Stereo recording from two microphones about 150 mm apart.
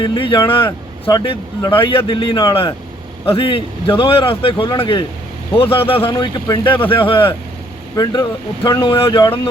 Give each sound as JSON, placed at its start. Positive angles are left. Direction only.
{"t": 0.0, "sound": "speech", "side_deg": 35}